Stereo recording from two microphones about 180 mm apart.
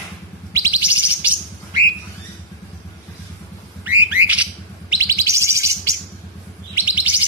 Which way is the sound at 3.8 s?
10° right (ahead or behind).